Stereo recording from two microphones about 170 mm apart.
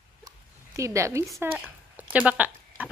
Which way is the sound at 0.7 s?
15° right (ahead or behind).